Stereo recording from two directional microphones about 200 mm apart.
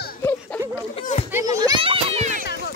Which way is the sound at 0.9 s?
35° left (ahead or behind).